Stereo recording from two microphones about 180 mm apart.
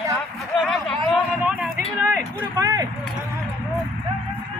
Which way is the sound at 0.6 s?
Centre (ahead or behind).